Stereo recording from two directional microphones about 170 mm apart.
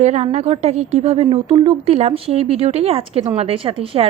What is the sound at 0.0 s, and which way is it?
A woman's voice, 40° right (ahead or behind).